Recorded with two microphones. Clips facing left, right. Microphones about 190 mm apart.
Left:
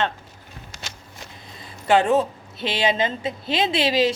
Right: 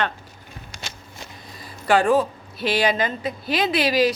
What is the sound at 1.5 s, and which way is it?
A woman's voice, 25° left (ahead or behind).